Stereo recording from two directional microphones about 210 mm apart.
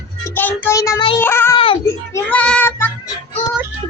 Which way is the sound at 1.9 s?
10° left (ahead or behind).